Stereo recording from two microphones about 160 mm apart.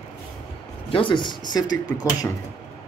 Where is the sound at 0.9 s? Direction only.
30° left (ahead or behind).